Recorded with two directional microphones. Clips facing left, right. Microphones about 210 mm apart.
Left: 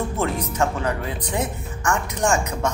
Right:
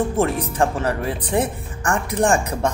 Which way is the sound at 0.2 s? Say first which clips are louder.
Right 2 dB; 30° right (ahead or behind).